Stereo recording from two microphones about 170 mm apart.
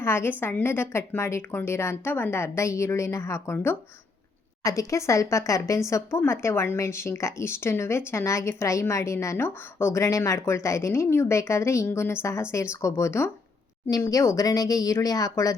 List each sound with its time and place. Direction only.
0.0 s a woman's voice: 15° left (ahead or behind)